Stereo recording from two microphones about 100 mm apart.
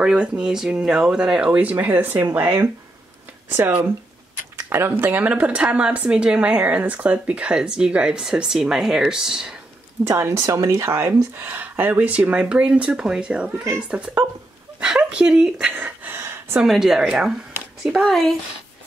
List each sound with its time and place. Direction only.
0.0 s speech: 5° right (ahead or behind)
10.0 s speech: 30° right (ahead or behind); by 15.7 s 5° right (ahead or behind)
15.7 s a sound: 15° right (ahead or behind)
16.5 s speech: 5° right (ahead or behind)